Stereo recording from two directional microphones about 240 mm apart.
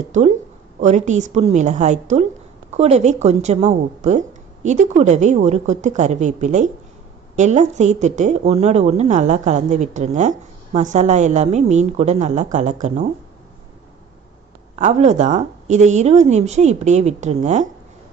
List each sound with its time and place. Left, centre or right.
0.7 s a woman's voice: right
14.8 s a woman's voice: right